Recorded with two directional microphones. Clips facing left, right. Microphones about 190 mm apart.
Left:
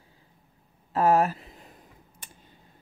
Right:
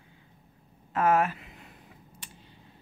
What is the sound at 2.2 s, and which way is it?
Computer keyboard, 45° left (ahead or behind).